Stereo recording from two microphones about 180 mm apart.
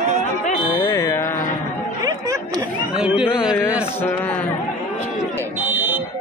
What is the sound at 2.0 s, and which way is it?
Chatter, 20° right (ahead or behind).